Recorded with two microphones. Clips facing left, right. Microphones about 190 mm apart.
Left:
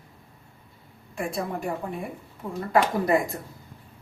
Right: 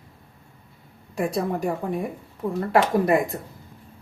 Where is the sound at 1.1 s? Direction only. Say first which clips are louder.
Right 5 dB; 40° right (ahead or behind).